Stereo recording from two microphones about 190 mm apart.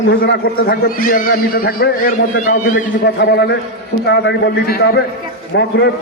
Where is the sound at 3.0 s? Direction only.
65° left (ahead or behind).